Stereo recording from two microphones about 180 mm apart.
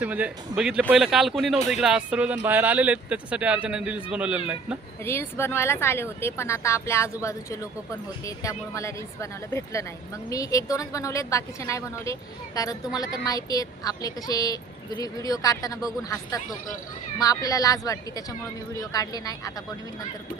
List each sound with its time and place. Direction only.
0.0 s speech: 10° right (ahead or behind)
5.0 s a woman's voice: 15° left (ahead or behind)